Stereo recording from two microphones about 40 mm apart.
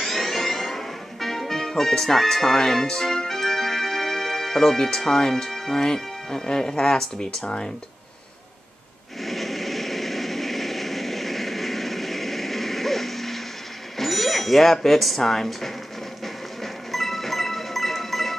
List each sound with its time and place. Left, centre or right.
0.0 s music: centre
7.4 s speech: left
9.2 s vehicle: centre
13.9 s speech: centre
16.6 s music: centre